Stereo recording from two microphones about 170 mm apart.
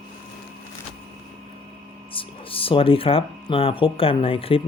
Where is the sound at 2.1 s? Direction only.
30° left (ahead or behind).